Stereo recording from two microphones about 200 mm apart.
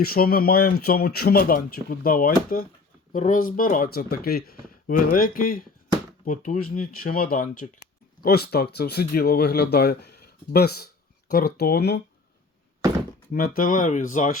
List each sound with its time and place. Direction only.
0.0 s speech: 50° left (ahead or behind)
13.3 s speech: 45° left (ahead or behind)